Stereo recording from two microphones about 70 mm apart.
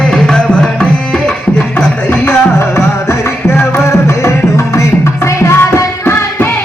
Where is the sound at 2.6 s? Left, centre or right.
Left.